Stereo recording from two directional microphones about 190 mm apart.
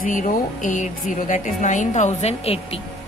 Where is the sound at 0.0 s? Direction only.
45° left (ahead or behind).